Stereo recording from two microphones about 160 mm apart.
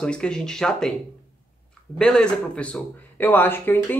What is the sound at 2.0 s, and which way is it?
Speech, 5° left (ahead or behind).